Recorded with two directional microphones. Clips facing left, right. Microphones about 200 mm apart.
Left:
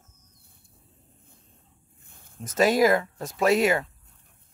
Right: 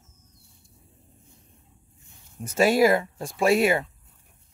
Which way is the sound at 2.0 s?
55° left (ahead or behind).